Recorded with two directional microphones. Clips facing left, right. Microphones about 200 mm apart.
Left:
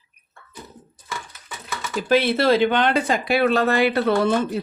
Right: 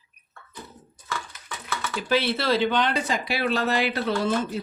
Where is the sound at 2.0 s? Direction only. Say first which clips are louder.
Left 6 dB; 50° left (ahead or behind).